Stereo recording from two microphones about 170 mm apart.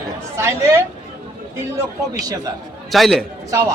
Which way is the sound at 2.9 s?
Centre (ahead or behind).